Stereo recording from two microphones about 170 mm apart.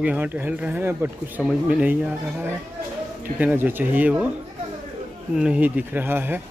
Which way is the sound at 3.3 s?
10° right (ahead or behind).